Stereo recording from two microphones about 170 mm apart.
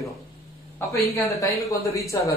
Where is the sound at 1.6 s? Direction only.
20° left (ahead or behind).